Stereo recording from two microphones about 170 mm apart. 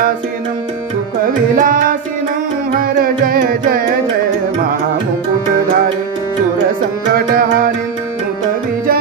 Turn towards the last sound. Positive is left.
turn(degrees=-60)  # may be behind; listen again after turning